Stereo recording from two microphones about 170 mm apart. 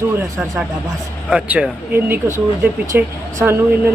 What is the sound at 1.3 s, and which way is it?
Speech, 5° right (ahead or behind).